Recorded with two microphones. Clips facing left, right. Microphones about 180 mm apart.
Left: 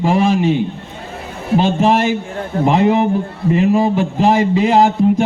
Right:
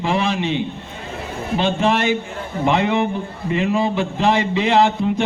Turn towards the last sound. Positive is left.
turn(degrees=40)  # may be behind; listen again after turning